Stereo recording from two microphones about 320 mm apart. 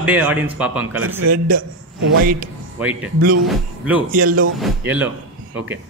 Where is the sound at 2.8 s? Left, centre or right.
Centre.